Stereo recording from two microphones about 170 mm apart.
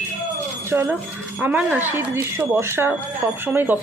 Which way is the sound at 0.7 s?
15° right (ahead or behind).